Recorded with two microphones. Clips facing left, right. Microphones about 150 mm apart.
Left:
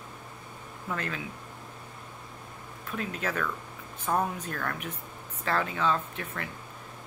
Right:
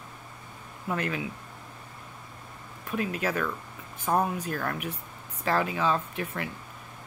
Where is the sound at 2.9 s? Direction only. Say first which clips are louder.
Right 4 dB; 10° right (ahead or behind).